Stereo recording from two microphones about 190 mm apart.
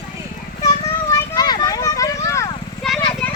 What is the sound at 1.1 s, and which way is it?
Vehicle, 20° left (ahead or behind).